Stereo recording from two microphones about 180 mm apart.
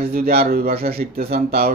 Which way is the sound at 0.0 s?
55° right (ahead or behind).